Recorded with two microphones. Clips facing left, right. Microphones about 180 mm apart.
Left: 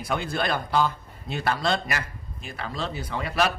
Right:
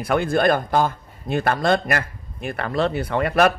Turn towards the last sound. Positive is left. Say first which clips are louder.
# right 8 dB
turn(degrees=-55)  # may be behind; listen again after turning